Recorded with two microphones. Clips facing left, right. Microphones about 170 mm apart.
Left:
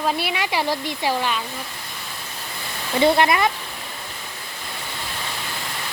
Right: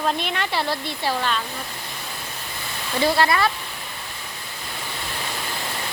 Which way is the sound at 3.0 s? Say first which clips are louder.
Left 3 dB; 20° left (ahead or behind).